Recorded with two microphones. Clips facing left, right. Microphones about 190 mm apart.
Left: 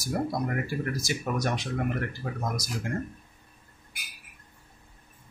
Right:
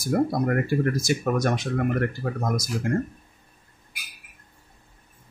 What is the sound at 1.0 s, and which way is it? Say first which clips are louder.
Speech: right 6 dB; 50° right (ahead or behind).